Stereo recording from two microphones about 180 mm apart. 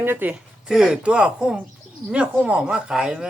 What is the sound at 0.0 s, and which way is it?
Speech, 10° right (ahead or behind).